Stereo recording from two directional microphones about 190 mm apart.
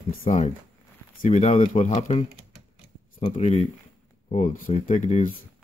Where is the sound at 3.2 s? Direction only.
40° left (ahead or behind).